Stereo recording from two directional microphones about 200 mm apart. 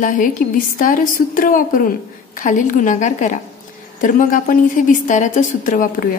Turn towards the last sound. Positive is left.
turn(degrees=40)  # may be behind; listen again after turning